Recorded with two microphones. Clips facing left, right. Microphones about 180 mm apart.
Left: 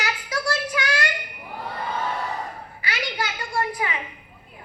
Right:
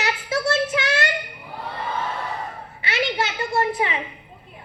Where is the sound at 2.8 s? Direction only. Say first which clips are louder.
Right 5 dB; 25° right (ahead or behind).